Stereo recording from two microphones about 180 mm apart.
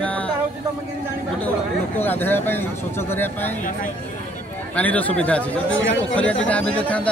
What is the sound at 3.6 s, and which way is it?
Speech, 45° left (ahead or behind).